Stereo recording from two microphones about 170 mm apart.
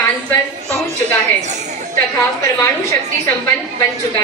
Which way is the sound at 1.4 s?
45° right (ahead or behind).